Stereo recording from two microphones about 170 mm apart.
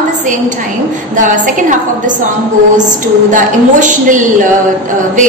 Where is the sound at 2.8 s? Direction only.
50° right (ahead or behind).